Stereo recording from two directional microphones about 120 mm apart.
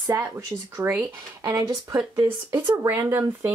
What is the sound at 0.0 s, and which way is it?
Speech, 25° right (ahead or behind).